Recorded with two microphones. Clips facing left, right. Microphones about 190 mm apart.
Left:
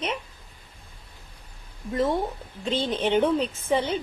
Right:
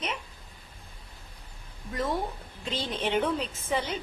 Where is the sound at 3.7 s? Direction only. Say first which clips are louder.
Left 5 dB; 30° left (ahead or behind).